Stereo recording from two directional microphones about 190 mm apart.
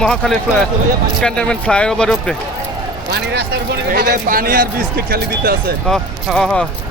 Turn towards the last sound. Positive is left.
turn(degrees=5)  # may be behind; listen again after turning